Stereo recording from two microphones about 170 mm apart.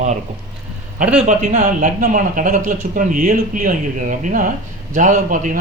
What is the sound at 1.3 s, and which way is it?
Speech, 45° right (ahead or behind).